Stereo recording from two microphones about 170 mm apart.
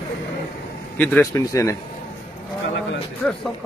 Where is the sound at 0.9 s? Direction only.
10° left (ahead or behind).